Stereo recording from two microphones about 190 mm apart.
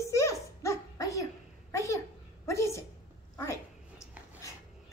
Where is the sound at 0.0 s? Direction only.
15° left (ahead or behind).